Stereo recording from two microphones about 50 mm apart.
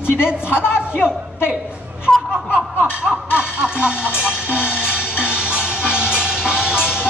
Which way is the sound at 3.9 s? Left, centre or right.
Left.